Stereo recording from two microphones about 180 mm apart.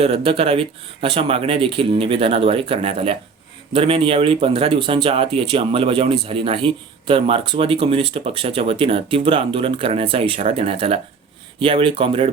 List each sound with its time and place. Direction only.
0.3 s speech: 30° right (ahead or behind)